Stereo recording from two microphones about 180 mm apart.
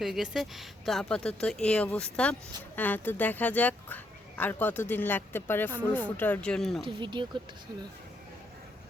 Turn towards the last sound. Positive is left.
turn(degrees=-25)  # may be behind; listen again after turning